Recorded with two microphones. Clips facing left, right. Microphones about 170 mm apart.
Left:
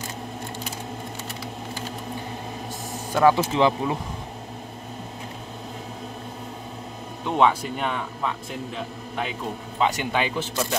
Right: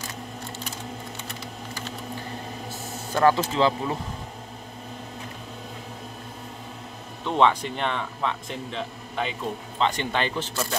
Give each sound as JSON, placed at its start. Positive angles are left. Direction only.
{"t": 3.2, "sound": "speech", "side_deg": 15}
{"t": 7.2, "sound": "a man's voice", "side_deg": 5}